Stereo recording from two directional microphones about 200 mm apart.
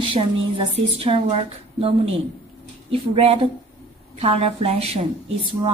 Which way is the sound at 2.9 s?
30° right (ahead or behind).